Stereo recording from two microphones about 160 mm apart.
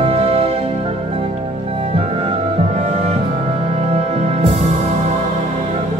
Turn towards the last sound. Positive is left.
turn(degrees=-45)  # may be behind; listen again after turning